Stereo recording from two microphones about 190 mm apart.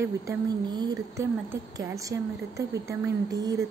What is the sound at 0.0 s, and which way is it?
Speech, 20° right (ahead or behind).